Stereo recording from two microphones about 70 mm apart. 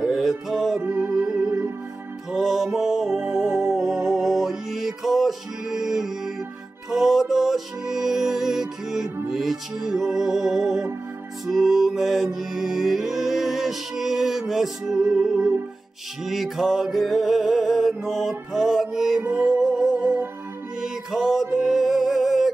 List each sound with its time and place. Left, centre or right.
0.0 s music: centre
0.7 s music: centre
2.3 s music: centre